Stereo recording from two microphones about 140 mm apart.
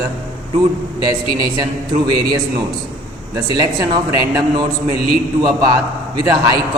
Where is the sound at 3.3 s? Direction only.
30° right (ahead or behind).